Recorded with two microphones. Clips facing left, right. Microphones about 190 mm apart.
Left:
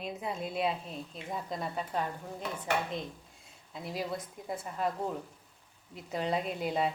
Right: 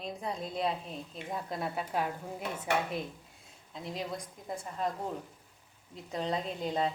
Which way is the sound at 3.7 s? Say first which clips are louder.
Left 2 dB; 5° left (ahead or behind).